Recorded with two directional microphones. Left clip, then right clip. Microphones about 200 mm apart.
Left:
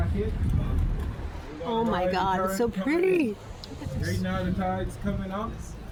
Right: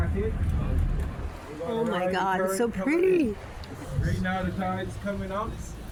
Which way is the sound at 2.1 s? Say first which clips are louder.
Even; 5° left (ahead or behind).